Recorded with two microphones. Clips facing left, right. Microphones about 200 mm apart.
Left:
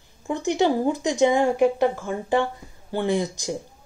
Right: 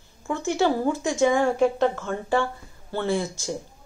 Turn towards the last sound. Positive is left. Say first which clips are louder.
# left 2 dB
turn(degrees=15)  # may be behind; listen again after turning